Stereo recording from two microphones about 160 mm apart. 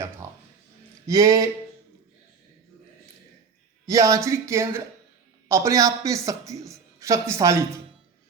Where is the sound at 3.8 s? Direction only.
20° right (ahead or behind).